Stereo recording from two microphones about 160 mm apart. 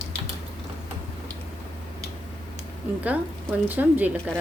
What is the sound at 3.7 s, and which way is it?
Speech, 10° right (ahead or behind).